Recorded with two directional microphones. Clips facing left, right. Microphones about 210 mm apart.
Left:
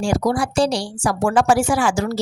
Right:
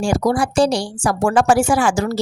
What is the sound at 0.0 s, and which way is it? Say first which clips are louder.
A woman's voice: right 2 dB; 50° right (ahead or behind).